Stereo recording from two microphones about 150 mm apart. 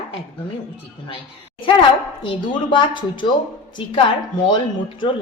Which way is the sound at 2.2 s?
35° left (ahead or behind).